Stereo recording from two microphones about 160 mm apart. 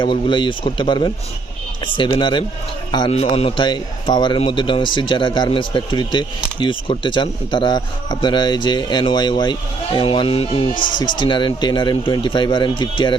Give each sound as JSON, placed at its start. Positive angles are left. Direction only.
{"t": 0.0, "sound": "a man's voice", "side_deg": 30}
{"t": 10.8, "sound": "speech", "side_deg": 55}
{"t": 11.2, "sound": "a man's voice", "side_deg": 30}